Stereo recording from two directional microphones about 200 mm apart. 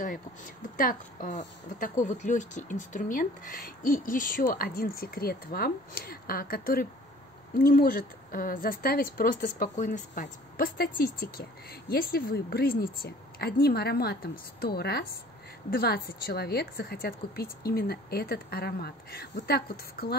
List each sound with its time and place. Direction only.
0.7 s speech: 40° left (ahead or behind)